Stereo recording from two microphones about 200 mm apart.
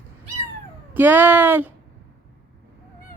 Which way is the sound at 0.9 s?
10° right (ahead or behind).